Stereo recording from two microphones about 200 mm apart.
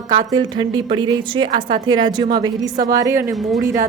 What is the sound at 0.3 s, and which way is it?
A woman's voice, 20° right (ahead or behind).